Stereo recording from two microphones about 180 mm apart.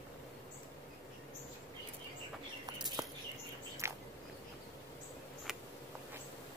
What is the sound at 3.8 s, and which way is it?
Biting, 15° right (ahead or behind).